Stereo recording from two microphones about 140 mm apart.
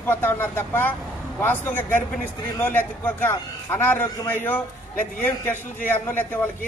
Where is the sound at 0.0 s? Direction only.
15° left (ahead or behind).